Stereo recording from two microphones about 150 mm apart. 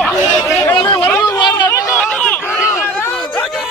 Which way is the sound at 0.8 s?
30° left (ahead or behind).